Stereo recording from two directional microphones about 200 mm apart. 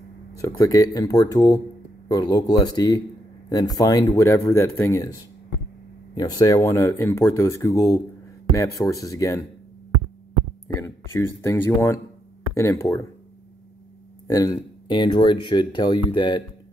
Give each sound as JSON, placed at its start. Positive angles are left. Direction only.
{"t": 0.4, "sound": "speech", "side_deg": 15}
{"t": 6.1, "sound": "speech", "side_deg": 20}
{"t": 10.8, "sound": "speech", "side_deg": 15}
{"t": 14.2, "sound": "speech", "side_deg": 20}